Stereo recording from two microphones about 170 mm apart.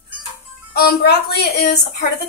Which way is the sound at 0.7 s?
70° left (ahead or behind).